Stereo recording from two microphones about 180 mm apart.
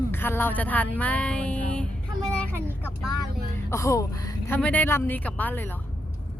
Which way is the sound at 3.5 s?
15° left (ahead or behind).